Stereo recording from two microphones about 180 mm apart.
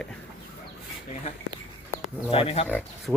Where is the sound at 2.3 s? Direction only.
30° left (ahead or behind).